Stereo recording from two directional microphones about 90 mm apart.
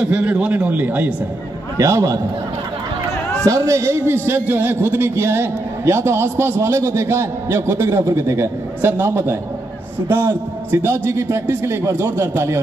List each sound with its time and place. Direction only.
0.0 s a man's voice: 15° right (ahead or behind)
1.8 s a man's voice: 35° right (ahead or behind)
3.4 s a man's voice: 35° right (ahead or behind)